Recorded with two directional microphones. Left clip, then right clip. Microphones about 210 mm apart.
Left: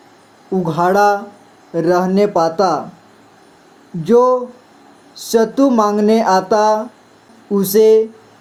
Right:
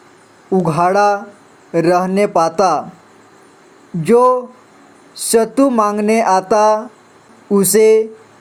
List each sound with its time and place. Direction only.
0.8 s speech: 25° right (ahead or behind)
4.0 s speech: 25° right (ahead or behind)